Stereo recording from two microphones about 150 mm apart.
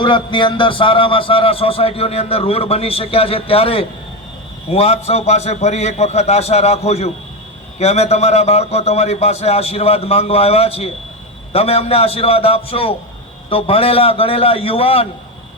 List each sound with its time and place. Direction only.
0.0 s a man's voice: 30° left (ahead or behind)